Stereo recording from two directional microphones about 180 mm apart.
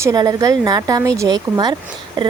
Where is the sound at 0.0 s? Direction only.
20° right (ahead or behind).